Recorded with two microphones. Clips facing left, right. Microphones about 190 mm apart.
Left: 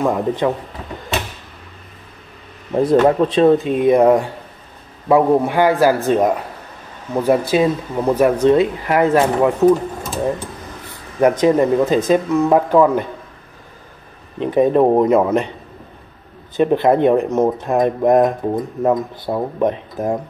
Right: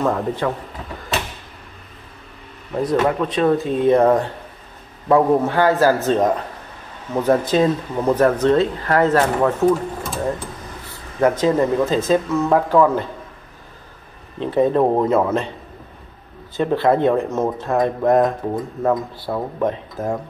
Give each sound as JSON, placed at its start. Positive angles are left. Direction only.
{"t": 0.0, "sound": "speech", "side_deg": 15}
{"t": 2.7, "sound": "speech", "side_deg": 25}
{"t": 3.5, "sound": "speech", "side_deg": 15}
{"t": 14.4, "sound": "speech", "side_deg": 15}
{"t": 16.5, "sound": "speech", "side_deg": 20}